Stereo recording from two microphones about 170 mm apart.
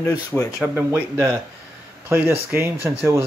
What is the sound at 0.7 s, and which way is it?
Speech, 15° right (ahead or behind).